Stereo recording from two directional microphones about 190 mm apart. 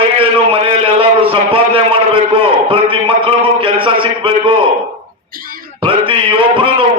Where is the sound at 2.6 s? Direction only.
25° right (ahead or behind).